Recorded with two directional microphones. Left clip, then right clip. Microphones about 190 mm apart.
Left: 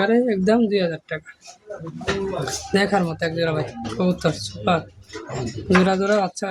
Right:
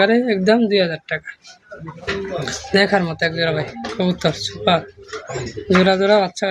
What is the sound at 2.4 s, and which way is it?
Speech, centre (ahead or behind).